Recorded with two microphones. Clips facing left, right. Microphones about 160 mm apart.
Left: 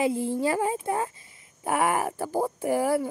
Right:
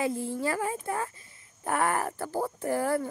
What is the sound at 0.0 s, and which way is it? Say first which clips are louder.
A woman's voice: left 4 dB; 20° left (ahead or behind).